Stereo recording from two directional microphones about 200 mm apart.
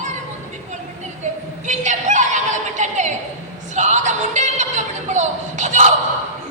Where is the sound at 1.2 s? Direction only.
35° right (ahead or behind).